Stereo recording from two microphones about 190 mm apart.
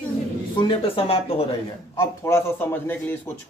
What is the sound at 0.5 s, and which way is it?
Speech, 25° left (ahead or behind).